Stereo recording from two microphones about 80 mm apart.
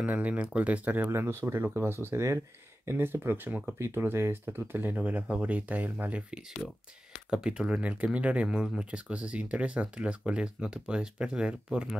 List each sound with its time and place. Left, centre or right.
0.1 s speech: centre
3.7 s speech: right; by 8.5 s centre
8.5 s speech: centre
8.7 s speech: centre